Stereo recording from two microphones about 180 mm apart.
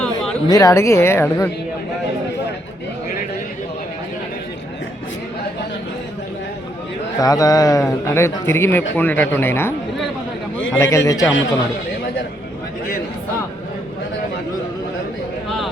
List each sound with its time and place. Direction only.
0.4 s a man's voice: 20° left (ahead or behind)
7.2 s a man's voice: 20° left (ahead or behind)
10.8 s a man's voice: 15° left (ahead or behind)